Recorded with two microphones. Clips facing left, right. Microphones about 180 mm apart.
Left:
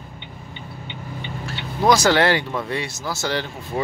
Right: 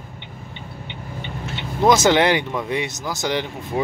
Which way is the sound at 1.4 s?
20° right (ahead or behind).